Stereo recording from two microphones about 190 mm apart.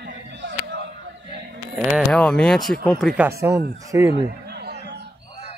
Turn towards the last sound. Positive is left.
turn(degrees=-15)  # may be behind; listen again after turning